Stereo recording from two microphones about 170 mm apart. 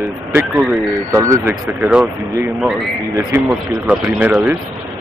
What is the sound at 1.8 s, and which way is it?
Speech, 5° right (ahead or behind).